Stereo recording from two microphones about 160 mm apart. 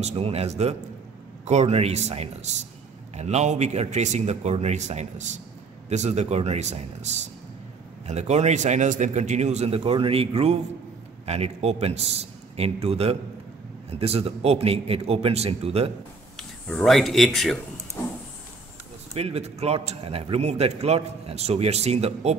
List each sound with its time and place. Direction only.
0.0 s a man's voice: 40° right (ahead or behind)
16.3 s speech: 5° left (ahead or behind)
19.1 s a man's voice: 40° right (ahead or behind)